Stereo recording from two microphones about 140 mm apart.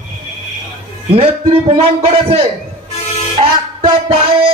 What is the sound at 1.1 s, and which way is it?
Music, 40° right (ahead or behind).